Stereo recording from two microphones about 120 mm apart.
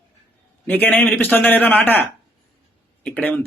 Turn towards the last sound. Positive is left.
turn(degrees=10)  # may be behind; listen again after turning